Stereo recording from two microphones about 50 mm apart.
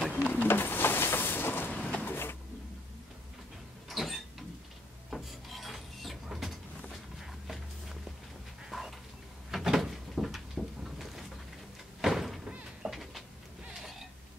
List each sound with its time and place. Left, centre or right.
0.1 s vehicle: left
2.0 s printer: left
3.9 s rodents: centre
5.1 s vehicle: centre
8.6 s dog: centre
9.5 s a sound: centre
12.0 s door: centre
12.8 s goat: centre
13.7 s a sound: centre